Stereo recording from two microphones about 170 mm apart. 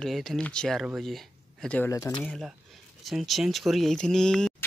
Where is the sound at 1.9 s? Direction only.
20° left (ahead or behind).